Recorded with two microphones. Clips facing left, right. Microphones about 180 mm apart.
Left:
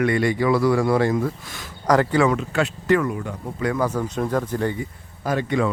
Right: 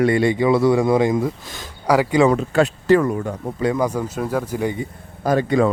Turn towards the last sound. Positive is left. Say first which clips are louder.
# right 5 dB
turn(degrees=-40)  # may be behind; listen again after turning